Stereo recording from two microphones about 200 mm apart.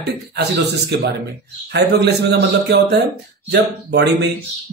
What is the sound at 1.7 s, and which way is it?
A man's voice, 55° right (ahead or behind).